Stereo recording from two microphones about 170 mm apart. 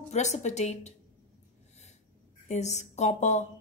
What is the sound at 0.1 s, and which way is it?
Speech, 45° left (ahead or behind).